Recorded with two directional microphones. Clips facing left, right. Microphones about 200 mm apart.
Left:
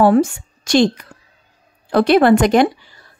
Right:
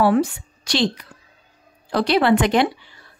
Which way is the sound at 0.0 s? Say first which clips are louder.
Left 5 dB; 45° left (ahead or behind).